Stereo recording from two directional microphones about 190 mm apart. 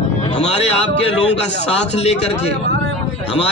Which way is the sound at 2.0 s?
35° left (ahead or behind).